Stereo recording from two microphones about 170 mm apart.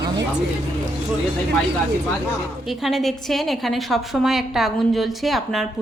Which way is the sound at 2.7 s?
Centre (ahead or behind).